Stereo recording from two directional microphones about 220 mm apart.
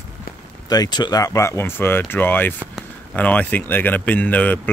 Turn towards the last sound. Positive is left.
turn(degrees=5)  # may be behind; listen again after turning